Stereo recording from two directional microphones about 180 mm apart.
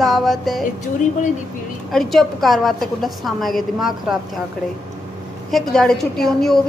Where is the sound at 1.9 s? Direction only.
Centre (ahead or behind).